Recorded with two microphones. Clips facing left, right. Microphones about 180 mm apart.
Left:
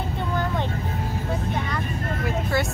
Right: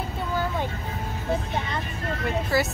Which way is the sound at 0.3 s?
5° right (ahead or behind).